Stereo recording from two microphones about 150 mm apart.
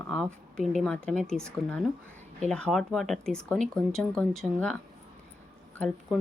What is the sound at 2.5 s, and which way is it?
Speech, 5° left (ahead or behind).